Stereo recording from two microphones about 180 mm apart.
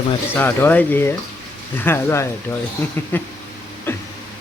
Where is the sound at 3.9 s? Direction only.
10° left (ahead or behind).